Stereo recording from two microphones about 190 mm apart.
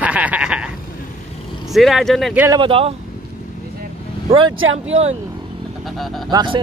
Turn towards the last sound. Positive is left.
turn(degrees=-25)  # may be behind; listen again after turning